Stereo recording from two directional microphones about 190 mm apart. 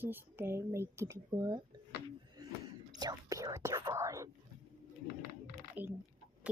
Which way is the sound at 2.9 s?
20° right (ahead or behind).